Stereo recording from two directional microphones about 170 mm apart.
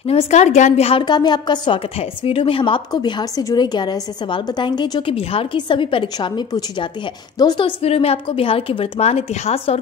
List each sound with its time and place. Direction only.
0.0 s a woman's voice: 35° left (ahead or behind)